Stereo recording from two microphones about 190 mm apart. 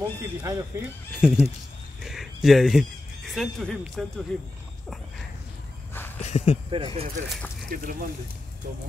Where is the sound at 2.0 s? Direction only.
Centre (ahead or behind).